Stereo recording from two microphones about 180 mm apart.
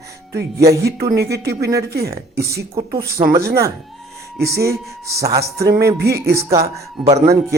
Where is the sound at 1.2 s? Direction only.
60° right (ahead or behind).